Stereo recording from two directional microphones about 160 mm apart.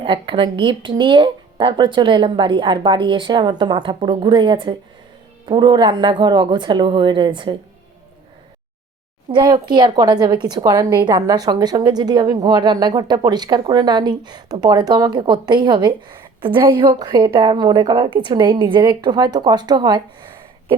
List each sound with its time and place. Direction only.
0.0 s speech: 30° right (ahead or behind)
9.3 s speech: 25° right (ahead or behind)